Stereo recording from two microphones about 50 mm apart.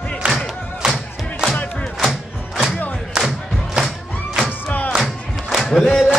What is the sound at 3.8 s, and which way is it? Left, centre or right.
Music, centre.